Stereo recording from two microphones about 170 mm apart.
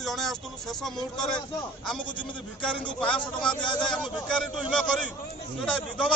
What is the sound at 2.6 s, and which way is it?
Speech, 5° left (ahead or behind).